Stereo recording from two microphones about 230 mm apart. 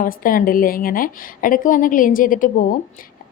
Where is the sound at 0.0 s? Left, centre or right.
Left.